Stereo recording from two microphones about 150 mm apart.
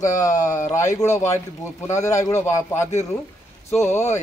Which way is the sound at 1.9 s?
20° left (ahead or behind).